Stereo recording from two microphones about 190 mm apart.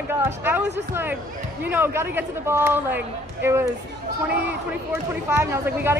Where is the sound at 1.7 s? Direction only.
10° right (ahead or behind).